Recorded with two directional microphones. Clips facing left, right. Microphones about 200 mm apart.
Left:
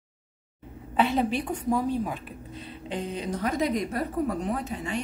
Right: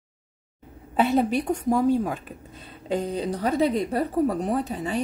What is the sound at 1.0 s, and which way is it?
A woman's voice, 45° right (ahead or behind).